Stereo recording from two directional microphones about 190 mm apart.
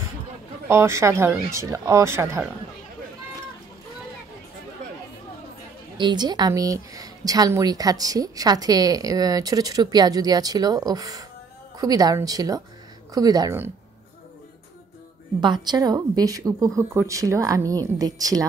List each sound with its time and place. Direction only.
0.7 s speech: 15° right (ahead or behind)
5.9 s a woman's voice: 25° right (ahead or behind)
15.4 s speech: 20° right (ahead or behind)